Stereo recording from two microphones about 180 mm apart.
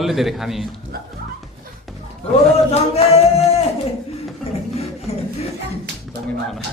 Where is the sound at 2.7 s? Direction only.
35° left (ahead or behind).